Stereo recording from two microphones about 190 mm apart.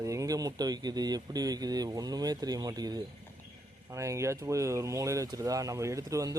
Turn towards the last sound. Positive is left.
turn(degrees=-15)  # may be behind; listen again after turning